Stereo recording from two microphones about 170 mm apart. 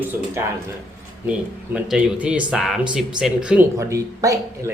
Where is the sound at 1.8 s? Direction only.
5° right (ahead or behind).